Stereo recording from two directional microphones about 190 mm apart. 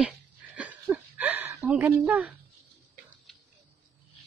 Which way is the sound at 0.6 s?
10° right (ahead or behind).